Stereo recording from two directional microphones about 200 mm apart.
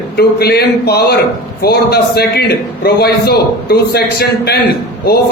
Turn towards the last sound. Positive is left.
turn(degrees=50)  # may be behind; listen again after turning